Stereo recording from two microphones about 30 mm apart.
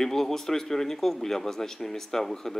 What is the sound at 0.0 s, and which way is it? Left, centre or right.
Speech, centre.